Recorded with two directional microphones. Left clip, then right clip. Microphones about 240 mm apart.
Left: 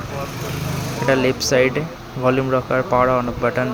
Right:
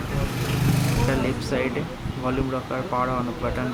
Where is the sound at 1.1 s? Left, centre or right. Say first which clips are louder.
Left 13 dB; centre.